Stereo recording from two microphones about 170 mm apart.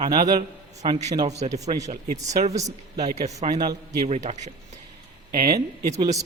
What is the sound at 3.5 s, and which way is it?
Speech, 25° right (ahead or behind).